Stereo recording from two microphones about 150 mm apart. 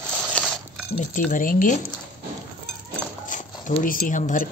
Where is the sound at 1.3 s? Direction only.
65° left (ahead or behind).